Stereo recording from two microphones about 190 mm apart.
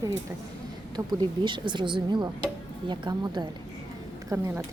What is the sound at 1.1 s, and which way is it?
Speech, 25° right (ahead or behind).